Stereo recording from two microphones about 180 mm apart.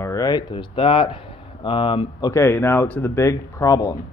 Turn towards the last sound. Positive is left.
turn(degrees=20)  # may be behind; listen again after turning